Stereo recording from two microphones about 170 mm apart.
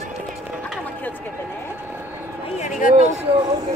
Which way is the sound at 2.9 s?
35° right (ahead or behind).